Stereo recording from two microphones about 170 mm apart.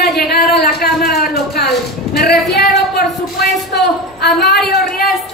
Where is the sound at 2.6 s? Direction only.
75° left (ahead or behind).